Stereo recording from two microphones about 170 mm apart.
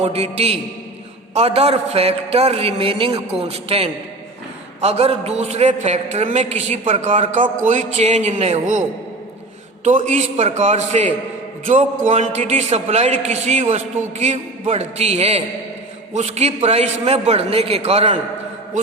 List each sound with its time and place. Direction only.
0.0 s a man's voice: 40° right (ahead or behind)
9.8 s a man's voice: 45° right (ahead or behind)